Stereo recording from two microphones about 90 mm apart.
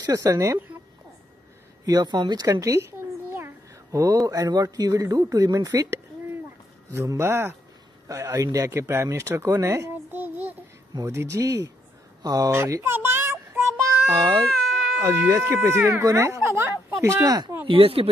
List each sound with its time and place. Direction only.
0.0 s speech: 40° right (ahead or behind)
1.9 s a child's voice: 50° right (ahead or behind)
7.1 s speech: 30° right (ahead or behind)
9.7 s child singing: 25° right (ahead or behind)
10.9 s speech: 45° right (ahead or behind)
12.2 s speech: 45° right (ahead or behind)
12.5 s speech: 30° right (ahead or behind)
12.9 s child singing: 25° right (ahead or behind)
14.1 s speech: 55° right (ahead or behind)
15.0 s speech: 30° right (ahead or behind)
17.6 s speech: 90° right